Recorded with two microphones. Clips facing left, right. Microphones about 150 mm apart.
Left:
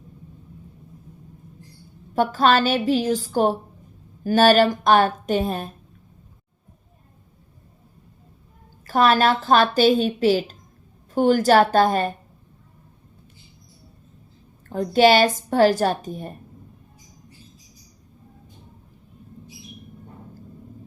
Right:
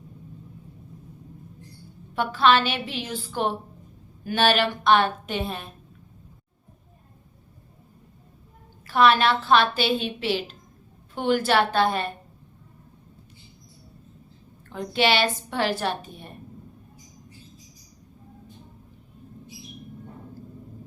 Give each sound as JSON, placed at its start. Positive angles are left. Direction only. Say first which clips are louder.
{"t": 2.1, "sound": "a woman's voice", "louder": "left 2 dB", "side_deg": 40}
{"t": 8.9, "sound": "a woman's voice", "louder": "left 2 dB", "side_deg": 40}
{"t": 14.7, "sound": "speech", "louder": "left 8 dB", "side_deg": 40}